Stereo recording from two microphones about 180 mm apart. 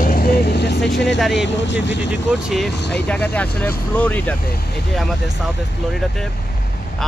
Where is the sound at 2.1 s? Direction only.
5° right (ahead or behind).